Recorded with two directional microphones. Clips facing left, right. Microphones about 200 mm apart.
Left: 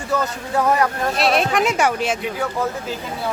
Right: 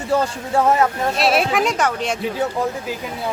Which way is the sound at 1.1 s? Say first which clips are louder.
Even; centre (ahead or behind).